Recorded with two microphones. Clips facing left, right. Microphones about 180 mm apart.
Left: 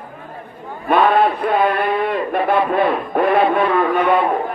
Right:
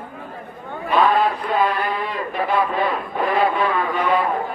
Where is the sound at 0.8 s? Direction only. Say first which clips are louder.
Left 3 dB; 60° left (ahead or behind).